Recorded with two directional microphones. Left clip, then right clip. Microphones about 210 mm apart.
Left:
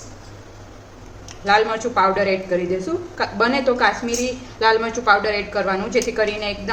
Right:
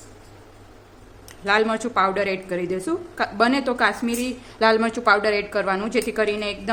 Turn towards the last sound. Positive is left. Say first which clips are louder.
# left 2 dB
turn(degrees=-55)  # may be behind; listen again after turning